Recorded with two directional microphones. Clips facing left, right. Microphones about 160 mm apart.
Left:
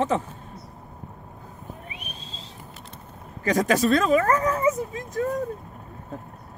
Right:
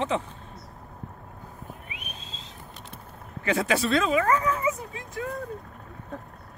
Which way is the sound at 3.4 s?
40° left (ahead or behind).